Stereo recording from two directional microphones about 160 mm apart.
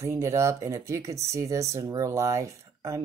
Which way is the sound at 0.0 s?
20° right (ahead or behind).